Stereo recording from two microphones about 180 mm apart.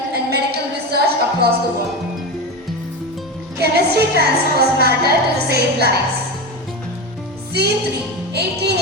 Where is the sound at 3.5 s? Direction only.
60° right (ahead or behind).